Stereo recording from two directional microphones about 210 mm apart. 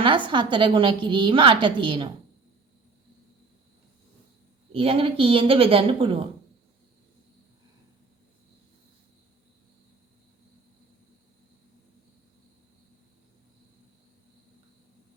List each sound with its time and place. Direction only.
0.0 s a woman's voice: 25° right (ahead or behind)
4.7 s a woman's voice: 25° right (ahead or behind)